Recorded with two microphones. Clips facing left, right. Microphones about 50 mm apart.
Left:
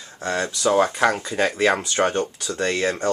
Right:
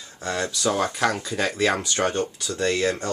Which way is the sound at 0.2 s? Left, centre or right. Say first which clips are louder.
Left 2 dB; left.